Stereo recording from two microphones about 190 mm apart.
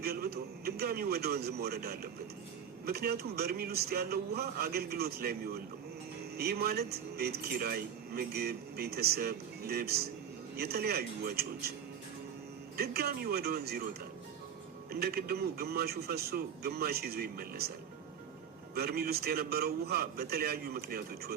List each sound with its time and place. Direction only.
0.0 s a man's voice: 55° right (ahead or behind)
12.7 s a man's voice: 55° right (ahead or behind)
14.9 s a man's voice: 55° right (ahead or behind)
18.7 s a man's voice: 55° right (ahead or behind)